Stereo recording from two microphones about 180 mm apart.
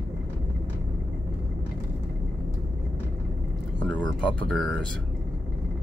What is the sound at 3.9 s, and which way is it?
Speech, 5° left (ahead or behind).